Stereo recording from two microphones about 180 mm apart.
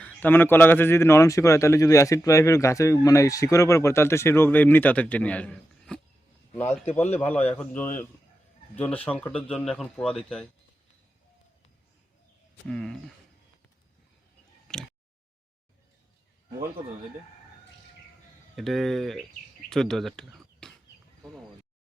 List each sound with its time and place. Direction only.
0.0 s speech: 10° left (ahead or behind)
7.1 s a man's voice: 35° left (ahead or behind)
7.3 s speech: 10° left (ahead or behind)
12.6 s speech: 5° left (ahead or behind)
14.7 s a sound: 5° left (ahead or behind)
18.5 s speech: centre (ahead or behind)